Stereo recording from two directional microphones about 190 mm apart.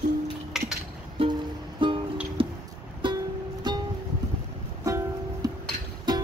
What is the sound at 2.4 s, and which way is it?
Vehicle, 30° right (ahead or behind).